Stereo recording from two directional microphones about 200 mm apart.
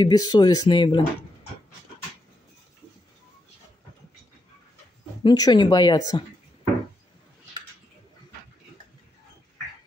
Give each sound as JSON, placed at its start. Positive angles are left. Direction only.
{"t": 0.0, "sound": "speech", "side_deg": 20}
{"t": 5.2, "sound": "speech", "side_deg": 20}